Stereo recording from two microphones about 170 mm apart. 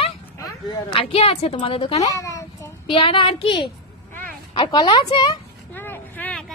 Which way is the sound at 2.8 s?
30° left (ahead or behind).